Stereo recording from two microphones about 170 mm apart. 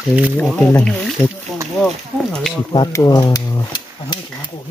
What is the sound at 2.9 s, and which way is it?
Speech, 20° left (ahead or behind).